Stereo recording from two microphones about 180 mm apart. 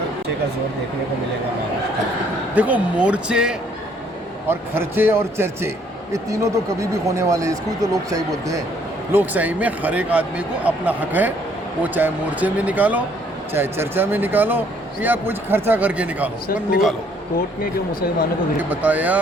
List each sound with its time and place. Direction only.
2.6 s a man's voice: 10° right (ahead or behind)
18.7 s a man's voice: 10° right (ahead or behind)